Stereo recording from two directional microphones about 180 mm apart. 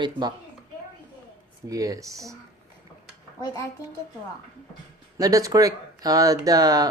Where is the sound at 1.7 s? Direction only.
20° right (ahead or behind).